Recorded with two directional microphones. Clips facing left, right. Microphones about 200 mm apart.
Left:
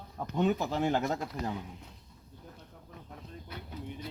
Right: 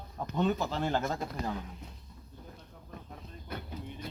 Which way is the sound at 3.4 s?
50° right (ahead or behind).